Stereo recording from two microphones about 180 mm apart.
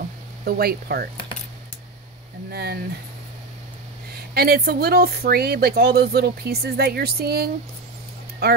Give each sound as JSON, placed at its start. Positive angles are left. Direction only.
{"t": 0.5, "sound": "speech", "side_deg": -60}
{"t": 2.5, "sound": "speech", "side_deg": -60}
{"t": 4.1, "sound": "speech", "side_deg": -60}